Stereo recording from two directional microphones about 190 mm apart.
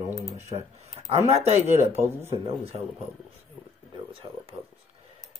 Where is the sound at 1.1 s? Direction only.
35° right (ahead or behind).